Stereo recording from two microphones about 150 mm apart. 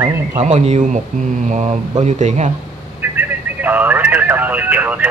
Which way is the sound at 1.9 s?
50° right (ahead or behind).